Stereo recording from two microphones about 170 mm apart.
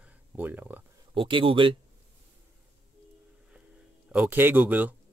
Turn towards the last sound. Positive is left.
turn(degrees=-10)  # may be behind; listen again after turning